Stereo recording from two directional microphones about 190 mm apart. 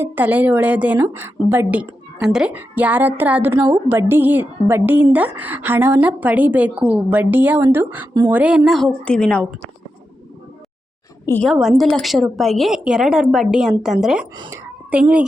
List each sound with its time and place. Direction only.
0.0 s a woman's voice: 10° right (ahead or behind)
11.3 s a woman's voice: 10° left (ahead or behind)
11.5 s a woman's voice: 5° right (ahead or behind)
14.3 s speech: 25° right (ahead or behind)
14.8 s speech: 5° right (ahead or behind)